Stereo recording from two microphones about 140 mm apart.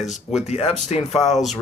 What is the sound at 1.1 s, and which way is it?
Speech, centre (ahead or behind).